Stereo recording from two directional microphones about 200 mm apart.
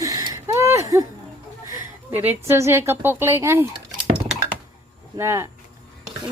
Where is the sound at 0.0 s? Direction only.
15° right (ahead or behind).